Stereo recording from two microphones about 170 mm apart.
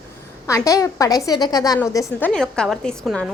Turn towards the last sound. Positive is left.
turn(degrees=5)  # may be behind; listen again after turning